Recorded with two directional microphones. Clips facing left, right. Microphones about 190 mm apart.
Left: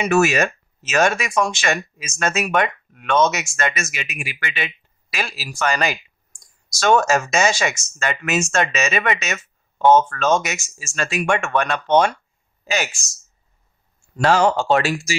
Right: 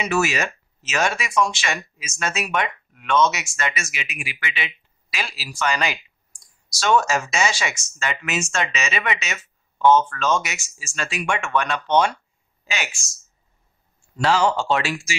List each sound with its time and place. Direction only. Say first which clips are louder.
0.0 s speech: left 5 dB; 50° left (ahead or behind)
14.1 s speech: left 3 dB; 50° left (ahead or behind)